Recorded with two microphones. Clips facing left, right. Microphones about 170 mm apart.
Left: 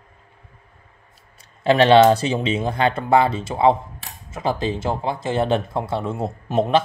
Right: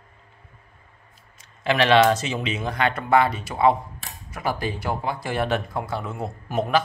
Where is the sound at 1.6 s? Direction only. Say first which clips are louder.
Left 5 dB; 30° left (ahead or behind).